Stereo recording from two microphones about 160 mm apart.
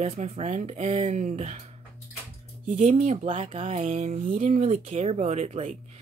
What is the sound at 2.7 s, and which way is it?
Speech, 45° right (ahead or behind).